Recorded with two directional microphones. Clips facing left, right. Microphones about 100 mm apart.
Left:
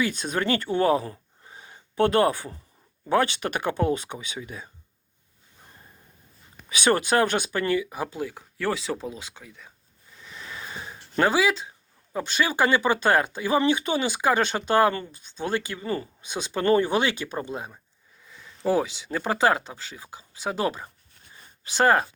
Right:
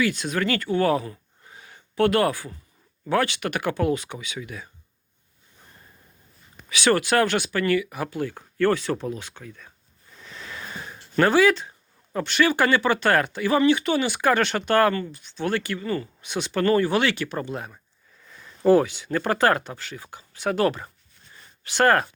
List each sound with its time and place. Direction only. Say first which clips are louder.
0.2 s speech: even; 30° left (ahead or behind)
1.5 s a sound: left 1 dB; 25° left (ahead or behind)
3.1 s speech: even; 20° left (ahead or behind)
6.9 s speech: right 1 dB; 20° left (ahead or behind)
8.3 s speech: right 6 dB; 5° left (ahead or behind)
11.2 s speech: right 4 dB; 10° left (ahead or behind)
18.6 s speech: right 6 dB; 10° left (ahead or behind)